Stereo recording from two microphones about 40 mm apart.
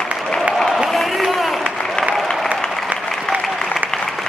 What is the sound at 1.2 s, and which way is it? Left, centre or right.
Applause, centre.